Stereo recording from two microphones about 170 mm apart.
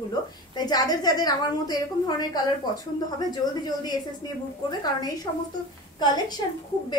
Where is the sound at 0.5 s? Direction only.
25° left (ahead or behind).